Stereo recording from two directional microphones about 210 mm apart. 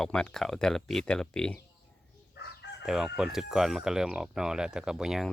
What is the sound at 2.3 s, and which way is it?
Chicken, 50° left (ahead or behind).